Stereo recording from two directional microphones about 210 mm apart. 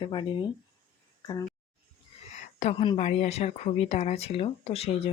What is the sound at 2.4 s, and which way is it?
Speech, 30° left (ahead or behind).